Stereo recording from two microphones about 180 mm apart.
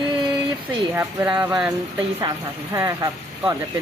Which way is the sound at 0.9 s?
15° right (ahead or behind).